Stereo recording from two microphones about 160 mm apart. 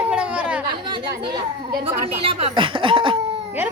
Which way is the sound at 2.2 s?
35° right (ahead or behind).